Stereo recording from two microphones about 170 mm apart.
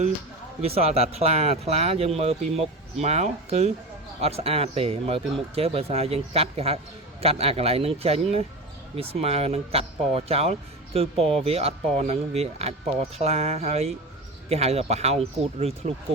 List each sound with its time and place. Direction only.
0.6 s speech: 35° right (ahead or behind)